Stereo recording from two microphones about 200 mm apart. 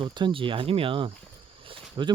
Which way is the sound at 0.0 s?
25° right (ahead or behind).